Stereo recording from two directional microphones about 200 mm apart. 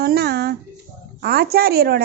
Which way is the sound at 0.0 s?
50° right (ahead or behind).